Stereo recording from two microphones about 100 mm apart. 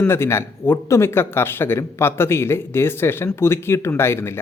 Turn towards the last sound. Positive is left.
turn(degrees=25)  # may be behind; listen again after turning